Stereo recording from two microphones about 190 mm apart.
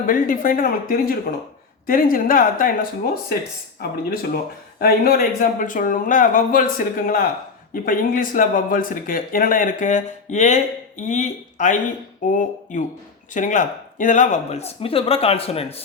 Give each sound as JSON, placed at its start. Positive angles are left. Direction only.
{"t": 0.1, "sound": "speech", "side_deg": 45}
{"t": 3.8, "sound": "speech", "side_deg": 50}